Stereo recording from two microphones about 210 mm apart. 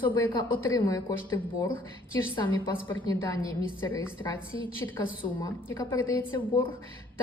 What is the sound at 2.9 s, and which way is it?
Speech, 15° left (ahead or behind).